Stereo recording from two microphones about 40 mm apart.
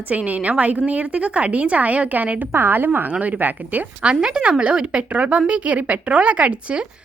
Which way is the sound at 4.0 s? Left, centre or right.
Right.